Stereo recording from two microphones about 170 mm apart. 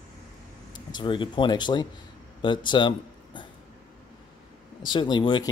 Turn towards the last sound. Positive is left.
turn(degrees=25)  # may be behind; listen again after turning